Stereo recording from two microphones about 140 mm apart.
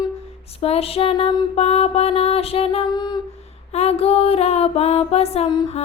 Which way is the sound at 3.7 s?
50° left (ahead or behind).